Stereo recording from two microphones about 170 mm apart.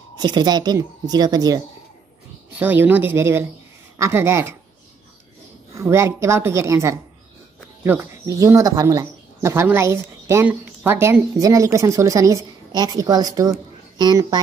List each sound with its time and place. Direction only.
0.2 s speech: 25° right (ahead or behind)
2.6 s a woman's voice: 10° right (ahead or behind)
5.8 s a woman's voice: 15° right (ahead or behind)